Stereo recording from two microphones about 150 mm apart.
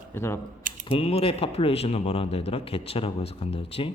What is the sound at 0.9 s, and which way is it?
Speech, 40° left (ahead or behind).